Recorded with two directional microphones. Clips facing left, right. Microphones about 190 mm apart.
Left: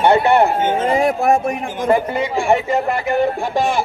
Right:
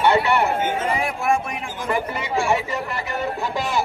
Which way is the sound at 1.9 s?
55° left (ahead or behind).